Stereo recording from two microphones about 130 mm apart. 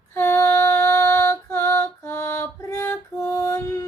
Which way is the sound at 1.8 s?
25° left (ahead or behind).